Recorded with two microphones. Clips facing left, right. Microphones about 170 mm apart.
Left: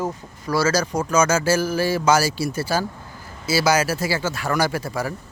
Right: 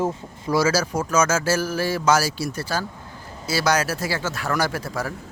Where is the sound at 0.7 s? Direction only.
5° right (ahead or behind).